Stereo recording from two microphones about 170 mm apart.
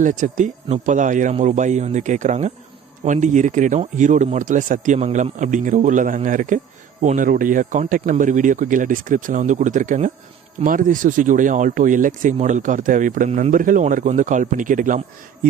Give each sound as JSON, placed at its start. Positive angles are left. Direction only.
{"t": 0.0, "sound": "speech", "side_deg": -45}